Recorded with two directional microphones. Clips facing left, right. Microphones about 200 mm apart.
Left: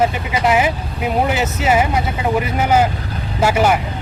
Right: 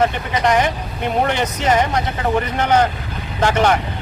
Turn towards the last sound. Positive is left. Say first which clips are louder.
# left 1 dB
turn(degrees=10)  # may be behind; listen again after turning